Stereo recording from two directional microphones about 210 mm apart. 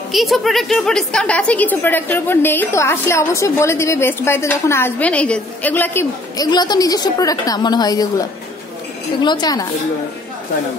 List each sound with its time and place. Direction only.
0.1 s a woman's voice: centre (ahead or behind); by 9.7 s 20° left (ahead or behind)